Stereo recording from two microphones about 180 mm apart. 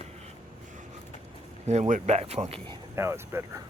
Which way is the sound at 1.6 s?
40° right (ahead or behind).